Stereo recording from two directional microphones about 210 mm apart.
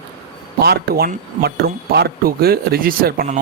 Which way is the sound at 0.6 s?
50° right (ahead or behind).